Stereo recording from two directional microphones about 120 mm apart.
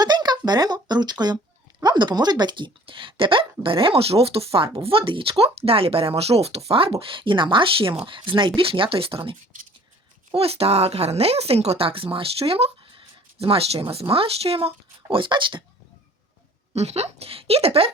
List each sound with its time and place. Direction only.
0.0 s a sound: 35° right (ahead or behind)
1.8 s speech: 35° right (ahead or behind)
10.3 s speech: 55° right (ahead or behind)
15.1 s speech: 40° right (ahead or behind)
16.7 s speech: 60° right (ahead or behind)